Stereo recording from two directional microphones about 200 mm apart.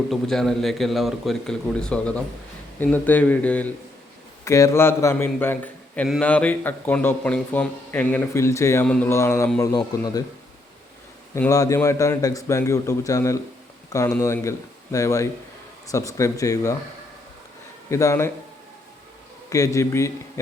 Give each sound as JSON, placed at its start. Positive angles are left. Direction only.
{"t": 0.1, "sound": "a man's voice", "side_deg": 0}
{"t": 11.3, "sound": "speech", "side_deg": 15}
{"t": 17.9, "sound": "speech", "side_deg": 15}
{"t": 19.5, "sound": "speech", "side_deg": 15}